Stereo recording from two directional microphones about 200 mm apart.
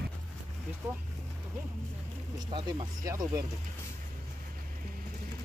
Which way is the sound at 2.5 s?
25° right (ahead or behind).